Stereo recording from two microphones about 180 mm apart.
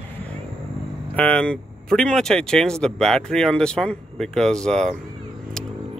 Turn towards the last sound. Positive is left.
turn(degrees=5)  # may be behind; listen again after turning